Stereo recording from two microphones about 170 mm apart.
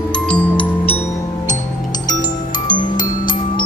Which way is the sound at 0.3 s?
5° left (ahead or behind).